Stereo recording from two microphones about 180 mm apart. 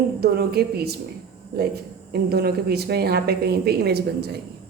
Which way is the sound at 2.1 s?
60° right (ahead or behind).